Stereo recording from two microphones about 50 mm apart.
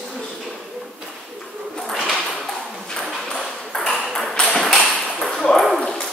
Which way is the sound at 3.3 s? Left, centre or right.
Centre.